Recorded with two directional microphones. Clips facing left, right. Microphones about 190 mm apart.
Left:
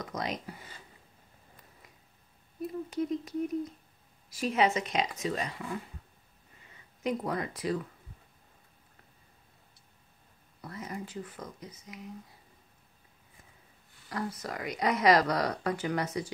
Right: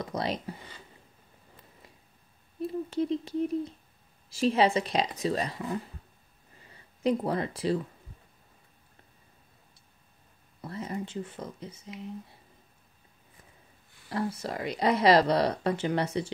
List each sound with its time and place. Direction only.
0.0 s a woman's voice: 30° right (ahead or behind)
2.6 s a woman's voice: 30° right (ahead or behind)
6.7 s speech: 30° right (ahead or behind)
10.6 s speech: 30° right (ahead or behind)
14.0 s speech: 30° right (ahead or behind)